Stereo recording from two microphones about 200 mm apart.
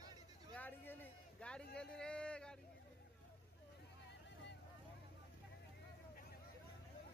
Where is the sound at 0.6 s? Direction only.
10° left (ahead or behind).